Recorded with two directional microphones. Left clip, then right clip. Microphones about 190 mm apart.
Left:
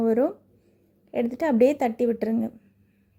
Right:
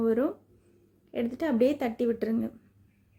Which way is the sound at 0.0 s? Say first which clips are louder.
Left 4 dB; 20° left (ahead or behind).